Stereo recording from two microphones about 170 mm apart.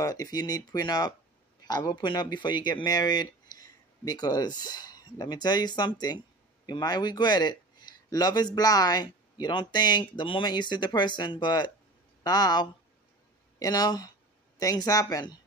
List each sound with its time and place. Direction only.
0.0 s speech: 20° left (ahead or behind)